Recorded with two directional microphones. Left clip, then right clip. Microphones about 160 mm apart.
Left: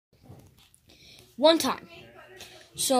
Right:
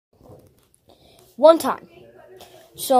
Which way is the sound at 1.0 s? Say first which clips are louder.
Right 8 dB; 15° left (ahead or behind).